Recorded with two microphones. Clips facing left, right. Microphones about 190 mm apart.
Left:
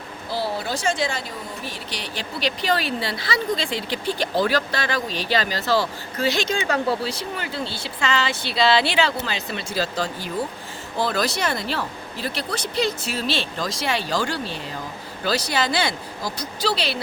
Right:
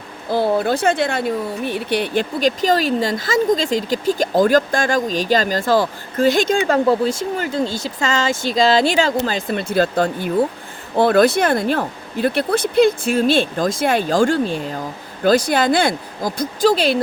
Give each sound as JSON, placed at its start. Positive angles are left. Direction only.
{"t": 0.3, "sound": "speech", "side_deg": -55}